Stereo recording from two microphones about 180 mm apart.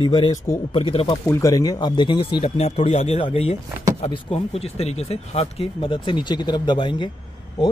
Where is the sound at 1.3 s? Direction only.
15° left (ahead or behind).